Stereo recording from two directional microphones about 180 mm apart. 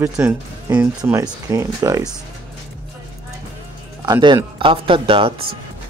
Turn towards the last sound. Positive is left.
turn(degrees=-30)  # may be behind; listen again after turning